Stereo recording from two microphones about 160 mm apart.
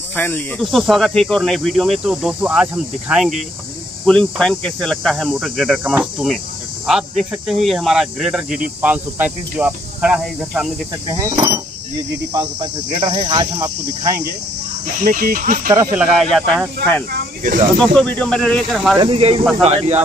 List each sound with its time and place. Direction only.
0.1 s speech: 10° left (ahead or behind)
0.7 s speech: centre (ahead or behind)
7.4 s speech: centre (ahead or behind)
11.1 s cricket: 20° right (ahead or behind)
15.0 s speech: 60° right (ahead or behind)
16.0 s speech: centre (ahead or behind)
17.4 s speech: 55° right (ahead or behind)
17.9 s speech: 5° left (ahead or behind)
18.9 s speech: 35° right (ahead or behind)